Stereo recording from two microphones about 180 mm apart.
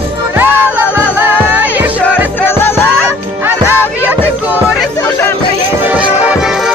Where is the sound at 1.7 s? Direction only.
10° right (ahead or behind).